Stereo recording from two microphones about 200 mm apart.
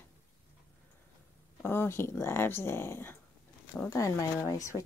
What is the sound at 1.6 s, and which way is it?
Speech, 10° left (ahead or behind).